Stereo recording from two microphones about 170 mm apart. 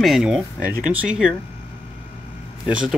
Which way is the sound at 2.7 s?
5° right (ahead or behind).